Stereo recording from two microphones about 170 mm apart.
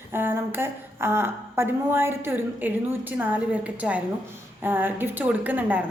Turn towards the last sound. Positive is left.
turn(degrees=-10)  # may be behind; listen again after turning